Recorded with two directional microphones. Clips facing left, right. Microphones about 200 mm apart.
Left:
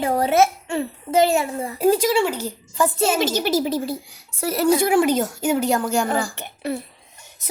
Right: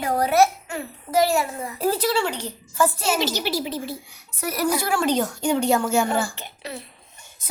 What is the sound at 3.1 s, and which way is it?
Speech, 50° left (ahead or behind).